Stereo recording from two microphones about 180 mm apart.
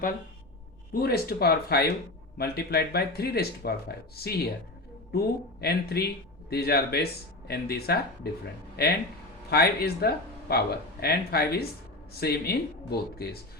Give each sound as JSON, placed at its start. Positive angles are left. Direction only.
{"t": 1.0, "sound": "speech", "side_deg": 60}